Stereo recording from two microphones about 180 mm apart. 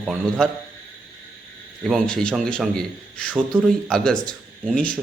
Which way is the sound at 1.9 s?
5° left (ahead or behind).